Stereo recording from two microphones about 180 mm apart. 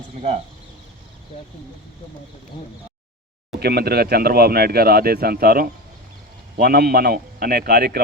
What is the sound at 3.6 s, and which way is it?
Speech, 60° right (ahead or behind).